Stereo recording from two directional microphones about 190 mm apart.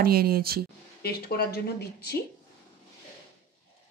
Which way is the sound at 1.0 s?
55° left (ahead or behind).